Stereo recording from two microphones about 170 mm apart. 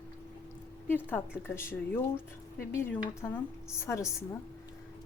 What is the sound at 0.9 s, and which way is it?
A woman's voice, 10° left (ahead or behind).